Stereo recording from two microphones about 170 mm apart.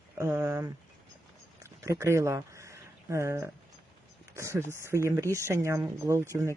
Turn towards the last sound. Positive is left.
turn(degrees=-15)  # may be behind; listen again after turning